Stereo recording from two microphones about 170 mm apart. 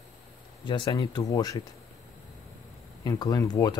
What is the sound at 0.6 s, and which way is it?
Speech, 25° left (ahead or behind).